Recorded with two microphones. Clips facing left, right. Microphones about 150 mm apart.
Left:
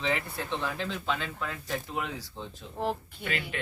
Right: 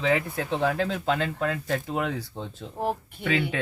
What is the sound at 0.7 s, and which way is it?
Speech, 55° right (ahead or behind).